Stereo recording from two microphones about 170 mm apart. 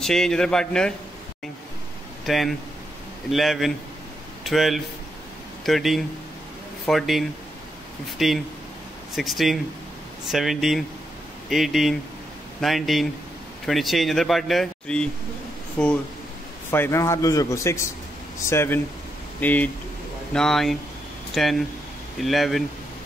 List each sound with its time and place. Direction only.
0.0 s speech: 5° left (ahead or behind)
2.2 s a man's voice: centre (ahead or behind)